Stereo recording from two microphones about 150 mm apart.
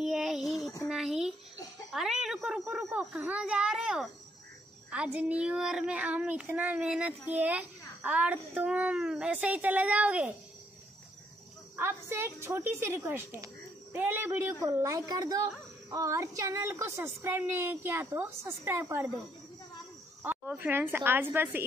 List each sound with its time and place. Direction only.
0.0 s a sound: 5° right (ahead or behind)
1.9 s a child's voice: centre (ahead or behind)
11.7 s a child's voice: 15° right (ahead or behind)
20.2 s a child's voice: 10° right (ahead or behind)